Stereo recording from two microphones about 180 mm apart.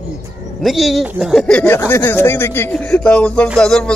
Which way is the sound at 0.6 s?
Centre (ahead or behind).